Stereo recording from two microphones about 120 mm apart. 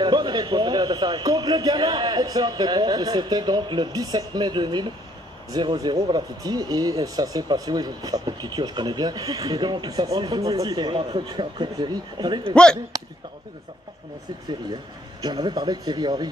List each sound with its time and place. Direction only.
0.0 s speech: 40° right (ahead or behind)
15.2 s speech: 35° right (ahead or behind)